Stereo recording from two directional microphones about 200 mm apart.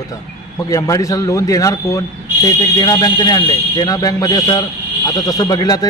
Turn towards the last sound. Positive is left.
turn(degrees=20)  # may be behind; listen again after turning